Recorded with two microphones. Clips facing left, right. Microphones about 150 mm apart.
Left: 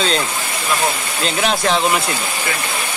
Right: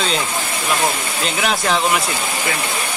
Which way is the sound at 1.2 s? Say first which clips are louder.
Left 2 dB; centre (ahead or behind).